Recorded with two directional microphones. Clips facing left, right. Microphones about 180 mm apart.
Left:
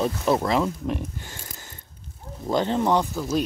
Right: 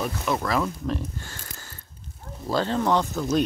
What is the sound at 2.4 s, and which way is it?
Speech, 20° left (ahead or behind).